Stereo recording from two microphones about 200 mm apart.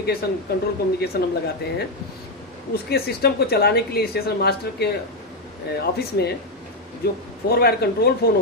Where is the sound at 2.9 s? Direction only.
50° left (ahead or behind).